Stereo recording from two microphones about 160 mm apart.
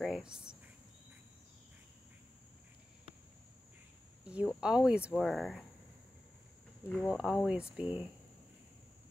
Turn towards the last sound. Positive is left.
turn(degrees=-5)  # may be behind; listen again after turning